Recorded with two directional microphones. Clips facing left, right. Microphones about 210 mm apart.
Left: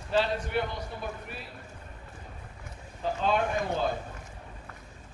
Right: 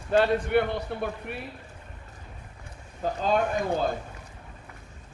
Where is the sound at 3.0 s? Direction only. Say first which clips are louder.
Right 2 dB; 45° right (ahead or behind).